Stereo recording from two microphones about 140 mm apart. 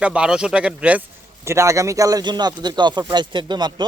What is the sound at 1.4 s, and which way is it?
A man's voice, 20° right (ahead or behind).